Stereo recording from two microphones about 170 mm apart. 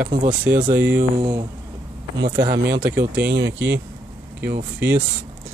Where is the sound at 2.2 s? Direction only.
65° right (ahead or behind).